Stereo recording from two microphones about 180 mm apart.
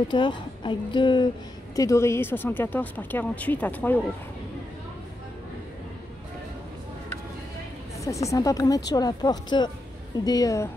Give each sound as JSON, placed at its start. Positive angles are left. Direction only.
{"t": 0.1, "sound": "speech", "side_deg": 25}
{"t": 8.0, "sound": "speech", "side_deg": 15}